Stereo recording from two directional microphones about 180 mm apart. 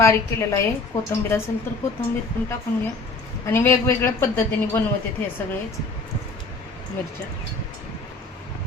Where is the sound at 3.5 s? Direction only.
15° left (ahead or behind).